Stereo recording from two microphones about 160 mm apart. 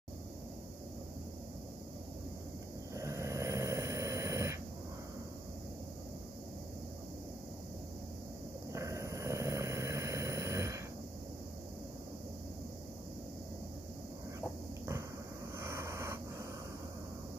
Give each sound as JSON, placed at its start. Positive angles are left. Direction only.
{"t": 2.9, "sound": "snoring", "side_deg": -20}
{"t": 8.7, "sound": "vehicle", "side_deg": -20}
{"t": 15.6, "sound": "vehicle", "side_deg": -15}